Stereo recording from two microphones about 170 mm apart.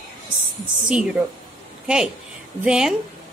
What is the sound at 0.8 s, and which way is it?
Speech, 5° right (ahead or behind).